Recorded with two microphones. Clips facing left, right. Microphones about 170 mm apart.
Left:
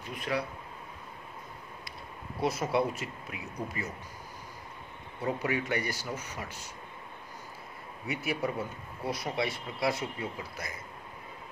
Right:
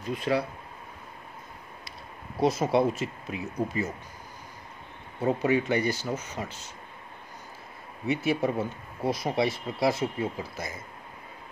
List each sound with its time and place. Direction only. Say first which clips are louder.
0.1 s speech: right 6 dB; 30° right (ahead or behind)
2.4 s speech: right 5 dB; 20° right (ahead or behind)
5.2 s speech: right 7 dB; 25° right (ahead or behind)
8.1 s speech: right 6 dB; 25° right (ahead or behind)